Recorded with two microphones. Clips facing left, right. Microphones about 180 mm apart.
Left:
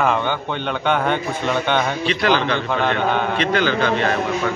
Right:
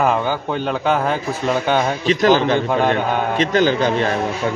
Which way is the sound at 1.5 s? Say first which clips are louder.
Right 2 dB; 5° right (ahead or behind).